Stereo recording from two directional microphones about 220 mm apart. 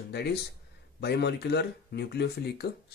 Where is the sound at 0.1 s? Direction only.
50° left (ahead or behind).